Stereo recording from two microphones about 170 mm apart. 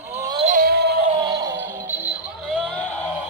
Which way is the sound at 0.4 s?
55° right (ahead or behind).